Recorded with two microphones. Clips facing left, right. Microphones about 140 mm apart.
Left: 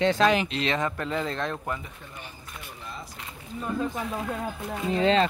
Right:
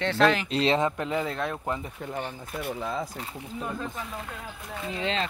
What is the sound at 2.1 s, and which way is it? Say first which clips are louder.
Speech: right 11 dB; 65° right (ahead or behind).